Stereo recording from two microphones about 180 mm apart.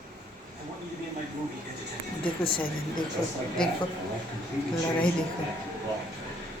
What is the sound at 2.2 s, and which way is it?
Speech, 30° left (ahead or behind).